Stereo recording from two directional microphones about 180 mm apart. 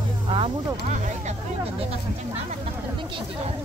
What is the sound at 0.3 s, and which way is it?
Speech, 35° right (ahead or behind).